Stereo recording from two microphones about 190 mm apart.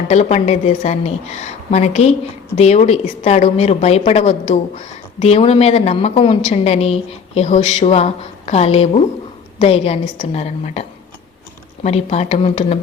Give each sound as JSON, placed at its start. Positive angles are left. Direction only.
{"t": 0.1, "sound": "a woman's voice", "side_deg": 35}